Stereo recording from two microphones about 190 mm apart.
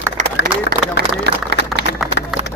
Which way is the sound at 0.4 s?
50° right (ahead or behind).